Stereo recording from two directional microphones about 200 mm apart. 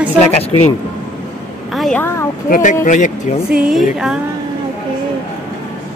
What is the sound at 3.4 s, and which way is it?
Speech, 5° right (ahead or behind).